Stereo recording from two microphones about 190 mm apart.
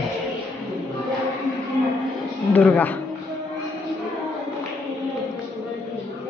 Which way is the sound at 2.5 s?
10° left (ahead or behind).